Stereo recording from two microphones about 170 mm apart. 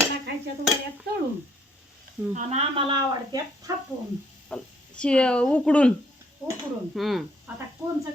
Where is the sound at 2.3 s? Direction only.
40° right (ahead or behind); by 3.8 s 20° right (ahead or behind).